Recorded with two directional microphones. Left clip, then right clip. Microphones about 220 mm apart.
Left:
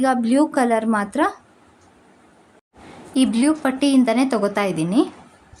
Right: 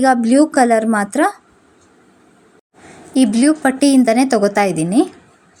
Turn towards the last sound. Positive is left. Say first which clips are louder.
# right 5 dB
turn(degrees=-20)  # may be behind; listen again after turning